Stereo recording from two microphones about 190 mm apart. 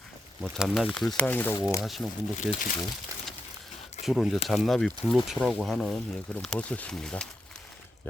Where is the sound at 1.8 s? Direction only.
Centre (ahead or behind).